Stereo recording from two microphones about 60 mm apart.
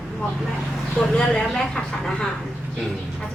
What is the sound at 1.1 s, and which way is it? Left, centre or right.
A woman's voice, centre.